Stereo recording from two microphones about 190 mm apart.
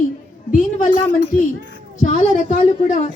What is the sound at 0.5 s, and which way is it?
Speech, 45° left (ahead or behind).